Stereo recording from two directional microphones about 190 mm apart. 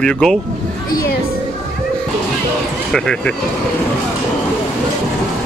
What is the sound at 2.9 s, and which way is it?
Speech, 5° left (ahead or behind).